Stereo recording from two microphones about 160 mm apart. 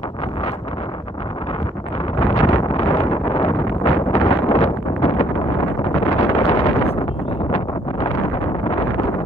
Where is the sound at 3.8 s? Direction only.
35° left (ahead or behind).